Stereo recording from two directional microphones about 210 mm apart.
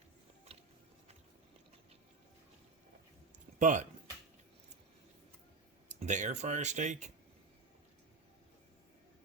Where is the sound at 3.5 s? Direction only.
35° right (ahead or behind).